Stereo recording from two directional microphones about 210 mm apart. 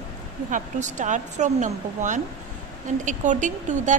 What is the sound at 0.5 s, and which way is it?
A woman's voice, 35° right (ahead or behind).